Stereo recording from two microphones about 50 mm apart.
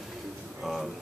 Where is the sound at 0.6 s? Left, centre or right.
Centre.